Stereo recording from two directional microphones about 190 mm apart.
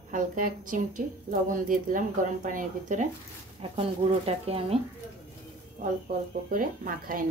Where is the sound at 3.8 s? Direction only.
30° right (ahead or behind).